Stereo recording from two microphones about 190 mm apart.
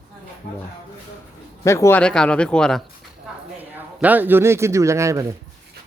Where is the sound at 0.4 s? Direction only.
45° left (ahead or behind).